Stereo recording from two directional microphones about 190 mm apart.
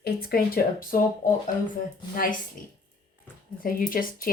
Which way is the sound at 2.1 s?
50° left (ahead or behind).